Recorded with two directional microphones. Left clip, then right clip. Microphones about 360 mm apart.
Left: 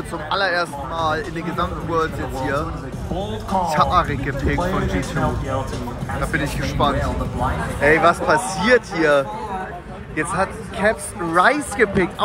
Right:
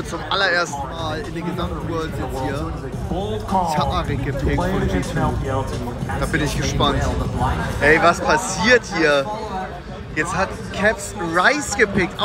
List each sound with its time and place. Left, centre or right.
0.3 s speech: centre